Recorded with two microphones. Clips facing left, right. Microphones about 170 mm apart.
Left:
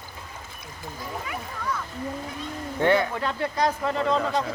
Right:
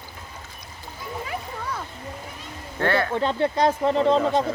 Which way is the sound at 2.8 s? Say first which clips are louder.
Left 2 dB; 15° left (ahead or behind).